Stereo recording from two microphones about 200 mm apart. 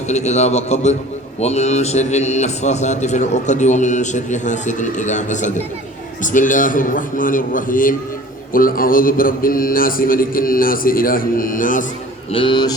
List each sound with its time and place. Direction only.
0.1 s a man's voice: 35° left (ahead or behind)
6.2 s mantra: 40° left (ahead or behind)
12.3 s a man's voice: 25° left (ahead or behind)